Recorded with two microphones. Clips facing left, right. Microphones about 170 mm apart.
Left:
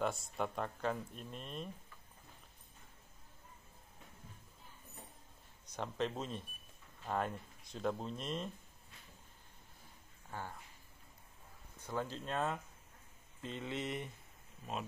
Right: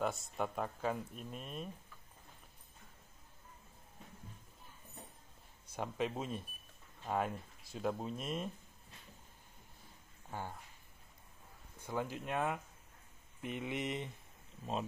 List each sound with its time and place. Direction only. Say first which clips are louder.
0.0 s speech: even; centre (ahead or behind)
5.7 s speech: right 1 dB; 10° right (ahead or behind)
10.3 s speech: right 2 dB; 15° right (ahead or behind)
11.8 s speech: right 1 dB; 10° right (ahead or behind)